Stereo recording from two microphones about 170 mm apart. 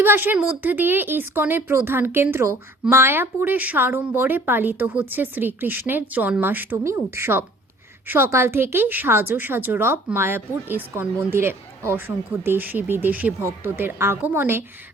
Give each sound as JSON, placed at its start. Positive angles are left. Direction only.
{"t": 0.0, "sound": "speech", "side_deg": -10}